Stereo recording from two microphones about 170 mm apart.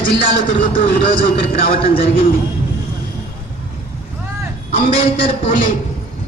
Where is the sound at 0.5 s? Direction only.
50° left (ahead or behind).